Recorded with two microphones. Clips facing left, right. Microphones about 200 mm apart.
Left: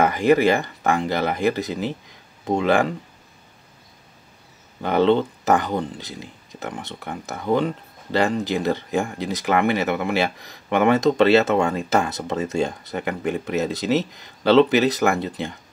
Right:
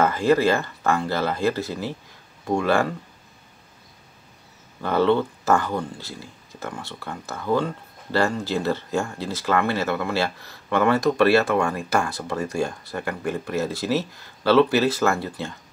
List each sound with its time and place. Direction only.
0.0 s speech: 15° left (ahead or behind)
4.8 s speech: 20° left (ahead or behind)